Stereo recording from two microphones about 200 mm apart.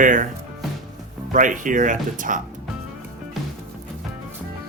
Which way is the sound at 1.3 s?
40° right (ahead or behind).